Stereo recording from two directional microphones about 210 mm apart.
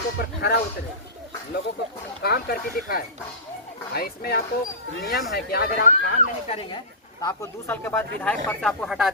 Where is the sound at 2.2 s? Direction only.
45° left (ahead or behind).